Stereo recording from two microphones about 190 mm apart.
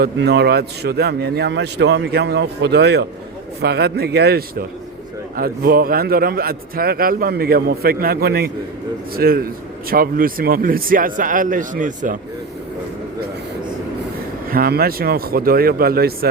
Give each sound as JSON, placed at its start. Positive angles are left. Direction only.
{"t": 0.0, "sound": "a man's voice", "side_deg": -60}
{"t": 14.5, "sound": "a man's voice", "side_deg": -50}